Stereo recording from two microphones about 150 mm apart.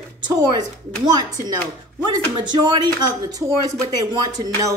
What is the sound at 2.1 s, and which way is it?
Speech, 30° right (ahead or behind).